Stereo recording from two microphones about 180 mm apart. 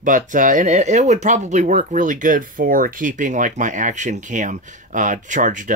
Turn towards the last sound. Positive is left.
turn(degrees=-45)  # may be behind; listen again after turning